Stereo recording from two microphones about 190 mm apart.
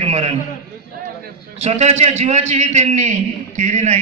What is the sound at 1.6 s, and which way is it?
A man's voice, 35° right (ahead or behind).